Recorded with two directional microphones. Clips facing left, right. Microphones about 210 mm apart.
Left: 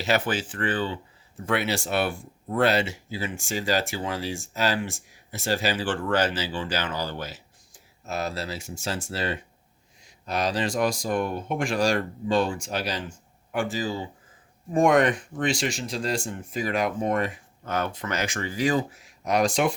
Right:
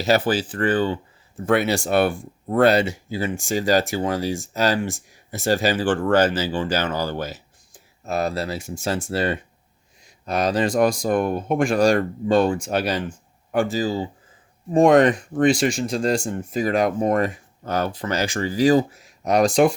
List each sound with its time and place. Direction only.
0.0 s speech: 35° right (ahead or behind)
15.4 s speech: 50° right (ahead or behind)